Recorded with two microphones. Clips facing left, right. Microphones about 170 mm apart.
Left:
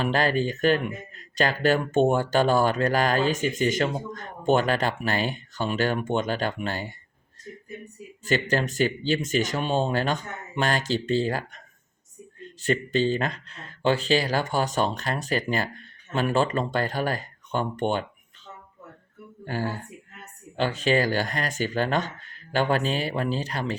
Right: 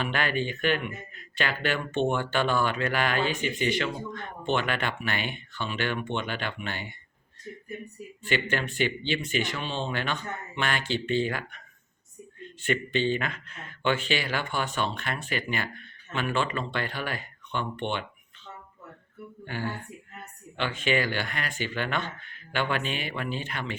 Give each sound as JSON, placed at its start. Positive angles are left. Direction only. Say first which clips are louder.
{"t": 0.0, "sound": "speech", "louder": "left 5 dB", "side_deg": 35}
{"t": 8.2, "sound": "speech", "louder": "left 4 dB", "side_deg": 40}
{"t": 12.6, "sound": "speech", "louder": "left 3 dB", "side_deg": 40}
{"t": 19.5, "sound": "speech", "louder": "left 4 dB", "side_deg": 40}